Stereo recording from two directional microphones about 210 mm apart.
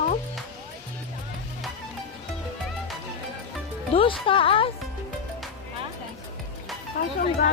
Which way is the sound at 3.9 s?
25° left (ahead or behind).